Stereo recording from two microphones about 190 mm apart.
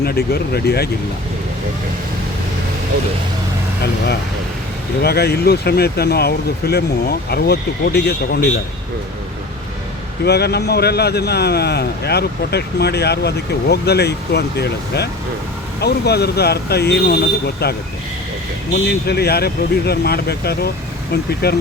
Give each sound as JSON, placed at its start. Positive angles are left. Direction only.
{"t": 0.0, "sound": "speech", "side_deg": 55}
{"t": 5.0, "sound": "speech", "side_deg": 55}
{"t": 10.2, "sound": "speech", "side_deg": 60}